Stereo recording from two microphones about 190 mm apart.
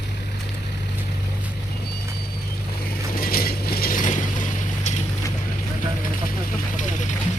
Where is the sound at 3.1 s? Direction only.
50° left (ahead or behind).